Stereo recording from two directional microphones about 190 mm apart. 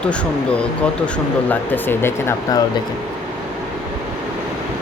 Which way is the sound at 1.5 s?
10° left (ahead or behind).